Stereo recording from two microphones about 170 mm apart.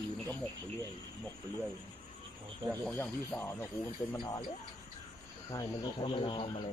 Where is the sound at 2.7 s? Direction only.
10° left (ahead or behind).